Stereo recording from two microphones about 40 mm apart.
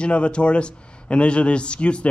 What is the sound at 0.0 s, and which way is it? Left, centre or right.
A man's voice, left.